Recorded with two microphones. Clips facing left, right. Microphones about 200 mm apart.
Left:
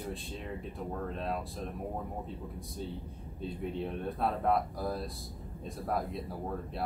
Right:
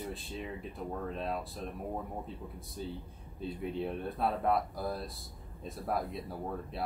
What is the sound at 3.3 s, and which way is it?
Speech, centre (ahead or behind).